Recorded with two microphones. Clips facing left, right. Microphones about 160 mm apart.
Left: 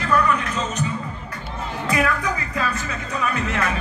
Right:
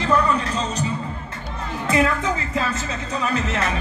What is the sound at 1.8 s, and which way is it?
Music, 25° right (ahead or behind).